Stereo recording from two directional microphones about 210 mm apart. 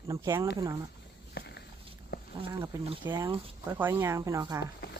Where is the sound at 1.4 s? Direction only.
50° left (ahead or behind).